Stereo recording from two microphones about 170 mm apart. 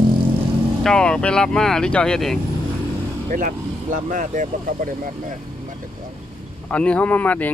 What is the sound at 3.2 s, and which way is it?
Speech, 50° right (ahead or behind).